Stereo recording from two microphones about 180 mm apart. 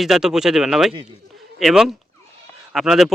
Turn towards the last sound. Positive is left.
turn(degrees=0)  # may be behind; listen again after turning